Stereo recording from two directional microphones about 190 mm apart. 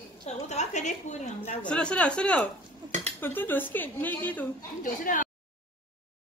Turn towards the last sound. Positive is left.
turn(degrees=45)  # may be behind; listen again after turning